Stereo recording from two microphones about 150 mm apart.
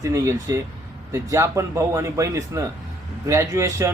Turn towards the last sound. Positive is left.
turn(degrees=-20)  # may be behind; listen again after turning